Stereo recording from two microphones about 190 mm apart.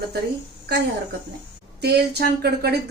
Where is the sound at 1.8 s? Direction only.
60° right (ahead or behind).